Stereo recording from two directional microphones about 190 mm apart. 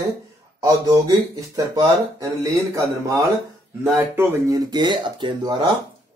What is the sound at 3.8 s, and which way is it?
Speech, 15° right (ahead or behind).